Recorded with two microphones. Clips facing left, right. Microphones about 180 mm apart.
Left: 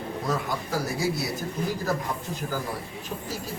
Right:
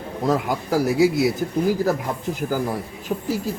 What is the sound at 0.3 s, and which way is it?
Speech, 90° right.